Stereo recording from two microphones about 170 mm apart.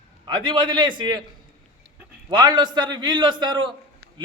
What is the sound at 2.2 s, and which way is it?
A man's voice, 25° right (ahead or behind).